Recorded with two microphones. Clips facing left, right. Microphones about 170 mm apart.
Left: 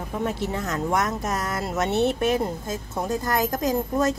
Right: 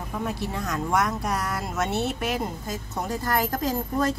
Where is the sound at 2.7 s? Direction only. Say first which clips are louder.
Left 3 dB; 20° left (ahead or behind).